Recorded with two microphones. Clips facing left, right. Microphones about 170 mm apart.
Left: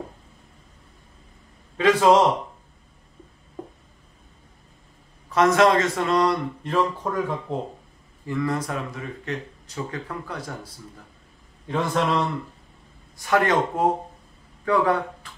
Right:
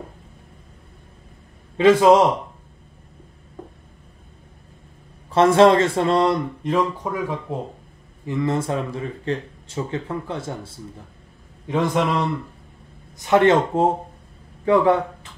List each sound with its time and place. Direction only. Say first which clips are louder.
1.8 s speech: right 4 dB; 25° right (ahead or behind)
5.3 s speech: right 4 dB; 30° right (ahead or behind)
6.6 s speech: even; 15° right (ahead or behind)
8.3 s speech: right 3 dB; 25° right (ahead or behind)
11.6 s a man's voice: right 4 dB; 15° right (ahead or behind)
13.2 s speech: right 5 dB; 25° right (ahead or behind)